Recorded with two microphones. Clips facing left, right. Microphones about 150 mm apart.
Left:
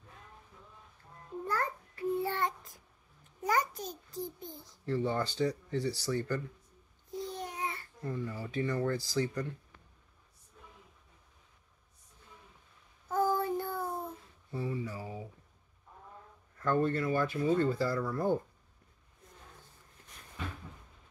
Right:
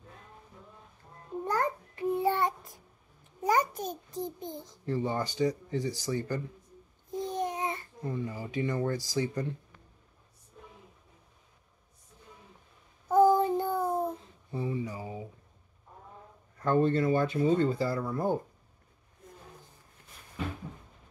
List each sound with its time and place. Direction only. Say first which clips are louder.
1.4 s child singing: right 5 dB; 20° right (ahead or behind)
3.4 s a child's voice: right 4 dB; 20° right (ahead or behind)
13.1 s child singing: right 8 dB; 20° right (ahead or behind)
14.5 s a sound: right 3 dB; 20° right (ahead or behind)
16.5 s speech: right 4 dB; 20° right (ahead or behind)